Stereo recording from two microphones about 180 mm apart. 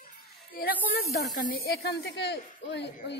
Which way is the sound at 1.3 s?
50° left (ahead or behind).